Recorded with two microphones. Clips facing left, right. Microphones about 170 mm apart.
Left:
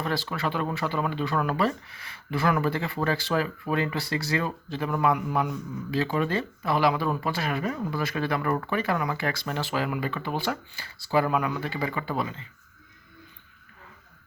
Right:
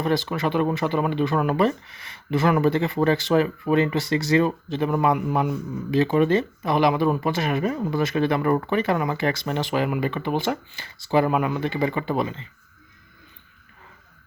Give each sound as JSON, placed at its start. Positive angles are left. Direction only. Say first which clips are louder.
{"t": 0.0, "sound": "speech", "louder": "right 6 dB", "side_deg": -20}